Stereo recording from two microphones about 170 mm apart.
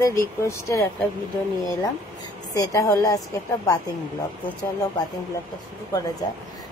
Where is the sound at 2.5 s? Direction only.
20° left (ahead or behind).